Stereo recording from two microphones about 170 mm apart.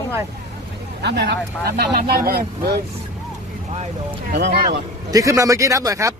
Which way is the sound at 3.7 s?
40° right (ahead or behind).